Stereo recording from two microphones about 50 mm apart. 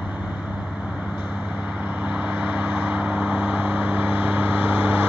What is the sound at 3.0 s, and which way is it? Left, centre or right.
Vehicle, right.